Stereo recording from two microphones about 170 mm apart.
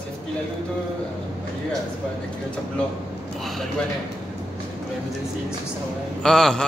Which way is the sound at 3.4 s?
Centre (ahead or behind).